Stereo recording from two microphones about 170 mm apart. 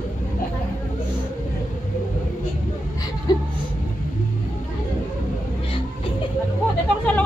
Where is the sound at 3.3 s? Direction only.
25° left (ahead or behind).